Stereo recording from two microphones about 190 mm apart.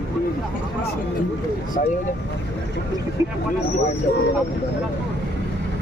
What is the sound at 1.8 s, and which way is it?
Speech, 40° left (ahead or behind).